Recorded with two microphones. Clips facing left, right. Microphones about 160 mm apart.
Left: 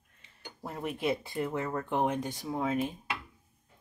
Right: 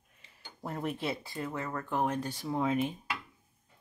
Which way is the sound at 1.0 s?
20° left (ahead or behind).